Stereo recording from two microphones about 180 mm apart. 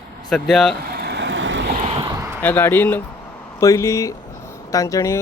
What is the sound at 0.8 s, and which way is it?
Vehicle, 60° right (ahead or behind).